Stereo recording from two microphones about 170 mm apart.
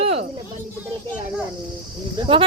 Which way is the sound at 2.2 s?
35° right (ahead or behind).